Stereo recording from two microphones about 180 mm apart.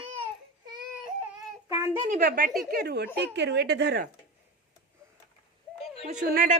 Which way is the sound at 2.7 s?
65° right (ahead or behind).